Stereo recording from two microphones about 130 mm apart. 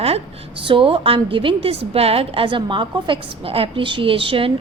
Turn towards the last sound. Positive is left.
turn(degrees=-45)  # may be behind; listen again after turning